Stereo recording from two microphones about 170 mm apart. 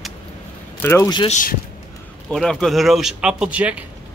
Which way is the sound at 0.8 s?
15° left (ahead or behind).